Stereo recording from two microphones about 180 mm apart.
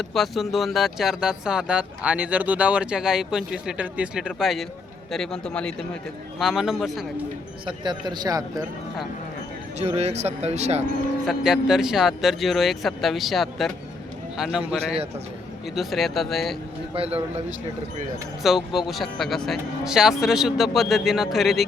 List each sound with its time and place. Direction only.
0.0 s speech: centre (ahead or behind)
7.9 s a man's voice: 25° right (ahead or behind)
9.7 s speech: 35° right (ahead or behind)
11.3 s speech: centre (ahead or behind)
15.7 s speech: centre (ahead or behind)
16.9 s speech: 30° right (ahead or behind)
18.4 s speech: centre (ahead or behind)